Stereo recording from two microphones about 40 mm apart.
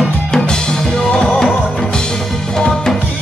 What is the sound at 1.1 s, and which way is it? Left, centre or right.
Music, left.